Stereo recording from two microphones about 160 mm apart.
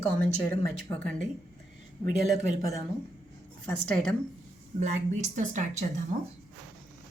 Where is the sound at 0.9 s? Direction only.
10° left (ahead or behind).